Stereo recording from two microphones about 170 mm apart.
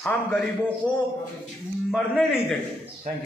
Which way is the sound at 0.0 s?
10° left (ahead or behind).